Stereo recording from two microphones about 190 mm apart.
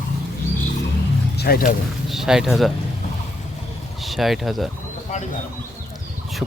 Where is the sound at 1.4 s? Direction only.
50° left (ahead or behind).